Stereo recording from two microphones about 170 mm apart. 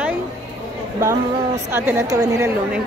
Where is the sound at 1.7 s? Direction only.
15° right (ahead or behind).